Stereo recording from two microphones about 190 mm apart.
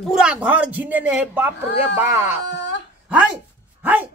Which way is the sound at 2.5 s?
70° left (ahead or behind).